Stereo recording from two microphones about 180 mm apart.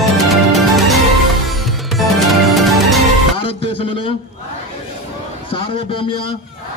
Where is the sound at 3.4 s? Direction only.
30° left (ahead or behind).